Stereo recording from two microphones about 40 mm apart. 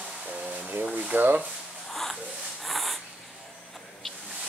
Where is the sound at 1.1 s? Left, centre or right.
Right.